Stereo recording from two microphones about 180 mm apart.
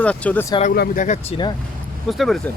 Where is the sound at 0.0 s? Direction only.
5° left (ahead or behind).